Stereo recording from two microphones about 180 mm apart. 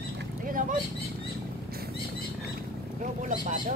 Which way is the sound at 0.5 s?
50° right (ahead or behind).